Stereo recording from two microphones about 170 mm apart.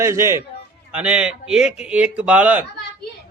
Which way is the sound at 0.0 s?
15° right (ahead or behind).